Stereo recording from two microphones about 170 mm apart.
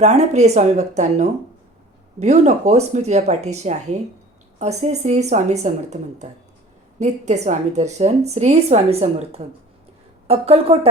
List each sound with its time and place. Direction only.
0.0 s a woman's voice: 40° right (ahead or behind)